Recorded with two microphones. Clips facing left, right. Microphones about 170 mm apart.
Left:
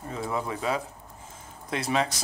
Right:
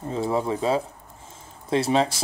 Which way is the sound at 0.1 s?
30° right (ahead or behind).